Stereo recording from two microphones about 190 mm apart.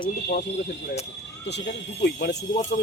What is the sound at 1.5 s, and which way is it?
Speech, 65° left (ahead or behind).